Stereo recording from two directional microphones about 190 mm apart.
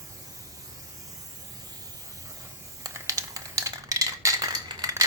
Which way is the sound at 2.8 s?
20° right (ahead or behind).